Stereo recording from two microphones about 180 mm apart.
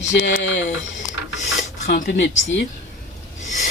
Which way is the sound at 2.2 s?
90° left.